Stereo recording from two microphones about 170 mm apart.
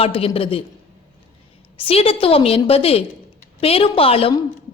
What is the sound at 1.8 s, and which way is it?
A woman's voice, 35° left (ahead or behind).